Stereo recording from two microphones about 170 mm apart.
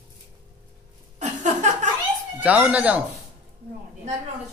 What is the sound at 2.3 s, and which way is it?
Speech, 10° right (ahead or behind).